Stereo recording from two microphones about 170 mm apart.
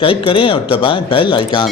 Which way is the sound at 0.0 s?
30° left (ahead or behind).